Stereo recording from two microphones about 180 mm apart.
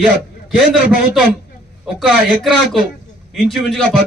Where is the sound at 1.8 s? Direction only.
Centre (ahead or behind).